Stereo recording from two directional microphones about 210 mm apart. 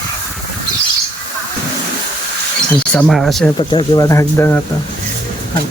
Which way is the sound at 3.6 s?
20° left (ahead or behind).